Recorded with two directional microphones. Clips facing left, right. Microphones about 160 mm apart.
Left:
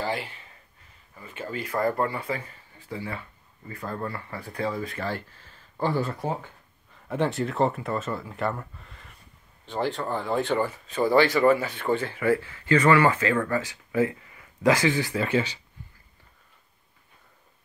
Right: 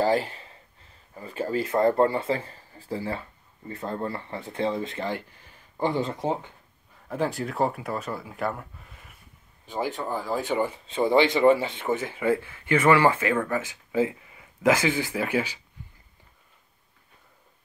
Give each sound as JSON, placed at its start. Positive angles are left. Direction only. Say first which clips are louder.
{"t": 0.0, "sound": "speech", "louder": "right 7 dB", "side_deg": -40}
{"t": 1.7, "sound": "speech", "louder": "right 4 dB", "side_deg": -25}
{"t": 7.1, "sound": "speech", "louder": "left 2 dB", "side_deg": 0}